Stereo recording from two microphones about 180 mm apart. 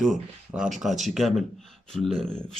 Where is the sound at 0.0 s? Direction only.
5° right (ahead or behind).